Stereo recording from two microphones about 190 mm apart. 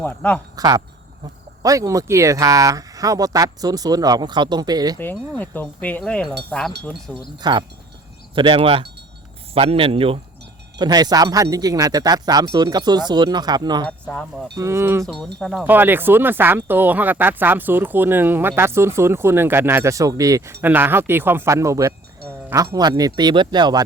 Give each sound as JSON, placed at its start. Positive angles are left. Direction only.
{"t": 0.0, "sound": "speech", "side_deg": 10}
{"t": 0.5, "sound": "speech", "side_deg": -20}
{"t": 5.4, "sound": "speech", "side_deg": 10}
{"t": 6.5, "sound": "wind chime", "side_deg": 5}
{"t": 7.4, "sound": "speech", "side_deg": -20}
{"t": 14.0, "sound": "wind chime", "side_deg": 5}
{"t": 14.5, "sound": "speech", "side_deg": -15}
{"t": 15.0, "sound": "wind chime", "side_deg": 0}
{"t": 15.6, "sound": "speech", "side_deg": -10}